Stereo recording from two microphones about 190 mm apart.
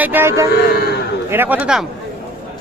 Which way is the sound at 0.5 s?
55° left (ahead or behind).